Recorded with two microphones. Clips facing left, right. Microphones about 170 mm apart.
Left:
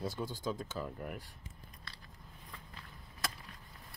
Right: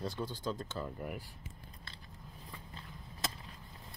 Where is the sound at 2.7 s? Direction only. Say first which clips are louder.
Right 3 dB; 25° right (ahead or behind).